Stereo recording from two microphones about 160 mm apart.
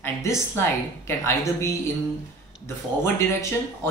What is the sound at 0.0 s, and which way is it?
A woman's voice, 15° left (ahead or behind).